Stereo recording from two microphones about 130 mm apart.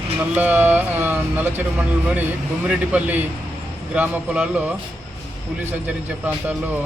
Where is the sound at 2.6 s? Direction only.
10° right (ahead or behind).